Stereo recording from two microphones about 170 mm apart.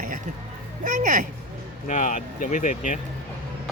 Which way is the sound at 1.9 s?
45° left (ahead or behind).